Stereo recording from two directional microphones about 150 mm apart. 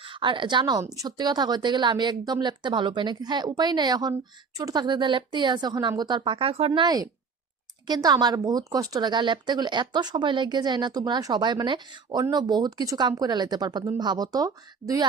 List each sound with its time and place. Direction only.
0.0 s speech: 35° right (ahead or behind)
6.8 s speech: 25° right (ahead or behind)